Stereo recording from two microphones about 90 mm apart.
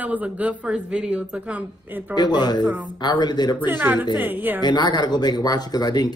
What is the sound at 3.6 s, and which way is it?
Speech, 20° right (ahead or behind).